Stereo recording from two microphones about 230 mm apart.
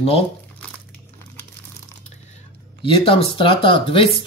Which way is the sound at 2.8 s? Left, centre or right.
Left.